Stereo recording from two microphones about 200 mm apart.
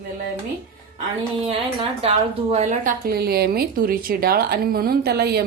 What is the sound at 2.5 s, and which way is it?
A woman's voice, 35° right (ahead or behind).